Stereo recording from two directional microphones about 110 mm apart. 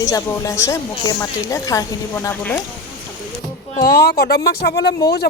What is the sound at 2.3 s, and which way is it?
Speech, 20° left (ahead or behind).